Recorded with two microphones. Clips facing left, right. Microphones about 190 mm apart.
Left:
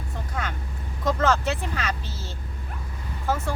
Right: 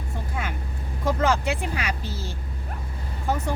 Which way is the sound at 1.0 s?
10° right (ahead or behind).